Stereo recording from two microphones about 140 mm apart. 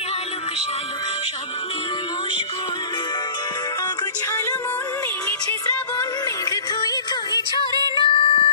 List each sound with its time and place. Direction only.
6.5 s music: 25° left (ahead or behind)
7.5 s music: 25° right (ahead or behind)
8.0 s music: 40° left (ahead or behind)